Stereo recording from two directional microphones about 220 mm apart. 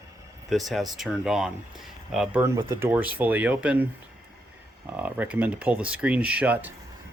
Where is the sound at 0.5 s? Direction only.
Centre (ahead or behind).